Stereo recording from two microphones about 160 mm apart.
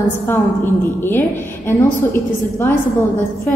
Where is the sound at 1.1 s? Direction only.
15° left (ahead or behind).